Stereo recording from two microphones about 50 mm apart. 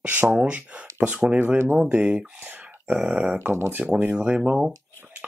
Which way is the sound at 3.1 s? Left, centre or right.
Right.